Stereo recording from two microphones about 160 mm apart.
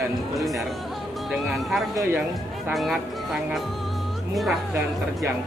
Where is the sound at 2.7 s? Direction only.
Centre (ahead or behind).